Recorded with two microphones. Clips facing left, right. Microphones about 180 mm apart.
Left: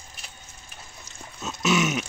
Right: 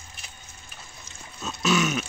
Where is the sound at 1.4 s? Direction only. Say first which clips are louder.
Even; 20° left (ahead or behind).